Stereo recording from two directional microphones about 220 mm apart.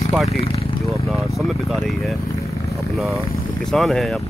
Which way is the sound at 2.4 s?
15° left (ahead or behind).